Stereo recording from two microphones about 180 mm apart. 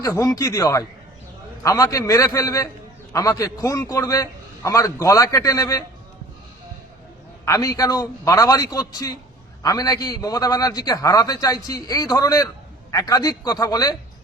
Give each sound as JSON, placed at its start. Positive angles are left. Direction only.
{"t": 0.0, "sound": "a man's voice", "side_deg": 20}
{"t": 7.4, "sound": "a man's voice", "side_deg": 20}